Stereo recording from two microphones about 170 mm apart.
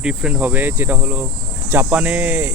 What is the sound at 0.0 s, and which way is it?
Cricket, 5° right (ahead or behind).